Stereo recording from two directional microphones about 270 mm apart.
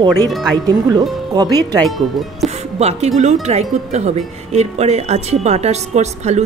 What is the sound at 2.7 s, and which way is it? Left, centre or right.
Speech, right.